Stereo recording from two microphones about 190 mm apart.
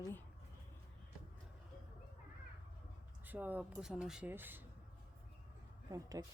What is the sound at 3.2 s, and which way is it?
Speech, 10° right (ahead or behind).